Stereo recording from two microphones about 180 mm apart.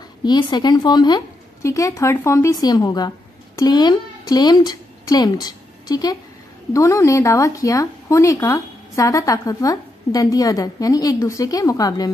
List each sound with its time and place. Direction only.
0.2 s a woman's voice: 25° left (ahead or behind)